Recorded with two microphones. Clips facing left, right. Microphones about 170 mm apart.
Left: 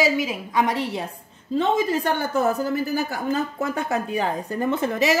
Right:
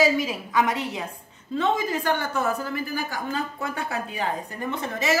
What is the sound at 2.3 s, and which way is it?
Speech, 35° left (ahead or behind).